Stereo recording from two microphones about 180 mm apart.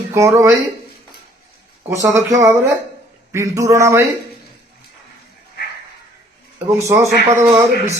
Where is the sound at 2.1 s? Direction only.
15° right (ahead or behind).